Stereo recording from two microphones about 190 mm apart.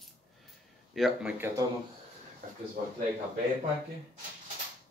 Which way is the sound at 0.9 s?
5° right (ahead or behind).